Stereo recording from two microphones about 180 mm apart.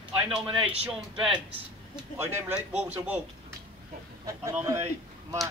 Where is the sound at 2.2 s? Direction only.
10° right (ahead or behind).